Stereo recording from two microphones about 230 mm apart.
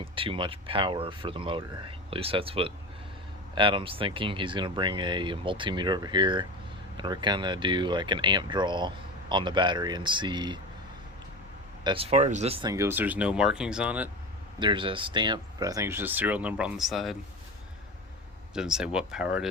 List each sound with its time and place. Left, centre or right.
0.0 s speech: right
11.8 s speech: right
12.7 s speech: centre
14.6 s speech: right; by 17.2 s centre
18.5 s speech: centre